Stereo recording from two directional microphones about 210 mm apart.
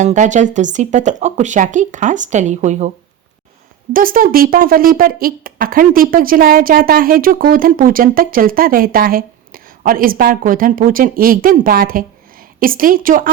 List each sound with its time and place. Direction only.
0.0 s speech: 35° right (ahead or behind)
3.9 s speech: 40° right (ahead or behind)